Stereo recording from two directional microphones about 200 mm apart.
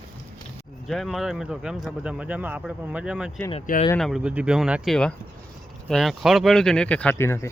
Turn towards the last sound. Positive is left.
turn(degrees=10)  # may be behind; listen again after turning